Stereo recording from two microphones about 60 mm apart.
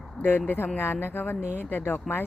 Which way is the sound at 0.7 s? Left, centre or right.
Left.